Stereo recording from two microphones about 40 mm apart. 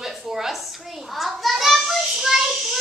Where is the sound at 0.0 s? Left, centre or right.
Centre.